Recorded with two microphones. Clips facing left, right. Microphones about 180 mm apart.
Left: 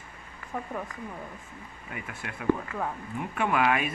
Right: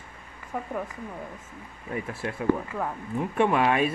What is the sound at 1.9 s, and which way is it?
Speech, 35° right (ahead or behind).